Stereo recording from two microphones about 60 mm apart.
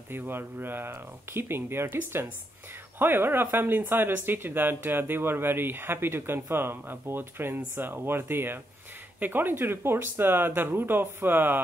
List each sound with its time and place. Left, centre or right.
0.1 s speech: right